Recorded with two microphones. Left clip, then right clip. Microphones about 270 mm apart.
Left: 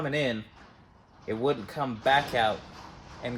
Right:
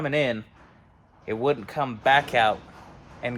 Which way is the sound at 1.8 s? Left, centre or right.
Centre.